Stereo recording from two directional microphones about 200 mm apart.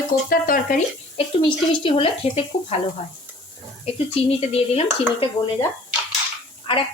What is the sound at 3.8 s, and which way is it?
Speech, 30° left (ahead or behind).